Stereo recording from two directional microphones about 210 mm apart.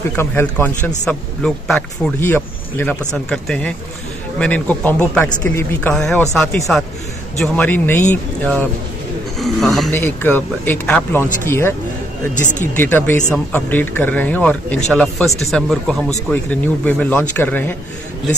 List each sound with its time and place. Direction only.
0.1 s a man's voice: 10° left (ahead or behind)
9.4 s a man's voice: centre (ahead or behind)
12.4 s speech: 35° left (ahead or behind)
12.7 s a man's voice: 10° left (ahead or behind)